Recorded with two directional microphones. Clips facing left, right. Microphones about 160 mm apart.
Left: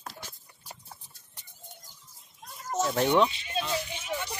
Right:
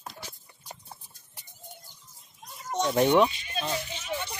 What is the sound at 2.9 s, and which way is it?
Speech, 10° right (ahead or behind).